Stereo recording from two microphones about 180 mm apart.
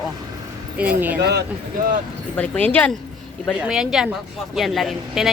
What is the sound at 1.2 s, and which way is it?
Speech, 65° right (ahead or behind).